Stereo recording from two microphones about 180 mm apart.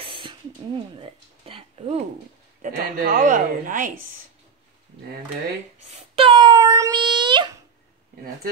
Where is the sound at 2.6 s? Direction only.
50° right (ahead or behind).